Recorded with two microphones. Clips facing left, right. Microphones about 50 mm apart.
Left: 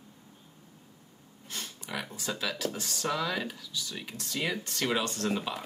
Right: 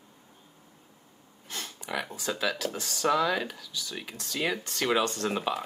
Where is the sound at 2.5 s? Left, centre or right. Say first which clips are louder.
Right 1 dB; right.